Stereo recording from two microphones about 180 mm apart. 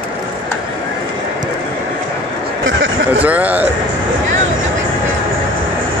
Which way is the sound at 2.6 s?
90° right.